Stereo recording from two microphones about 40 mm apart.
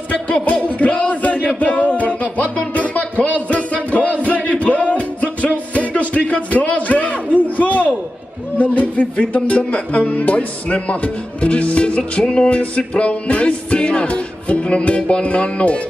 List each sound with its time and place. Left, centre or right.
0.3 s speech: left
1.6 s music: left
7.3 s a sound: left
8.7 s speech: left
12.0 s music: left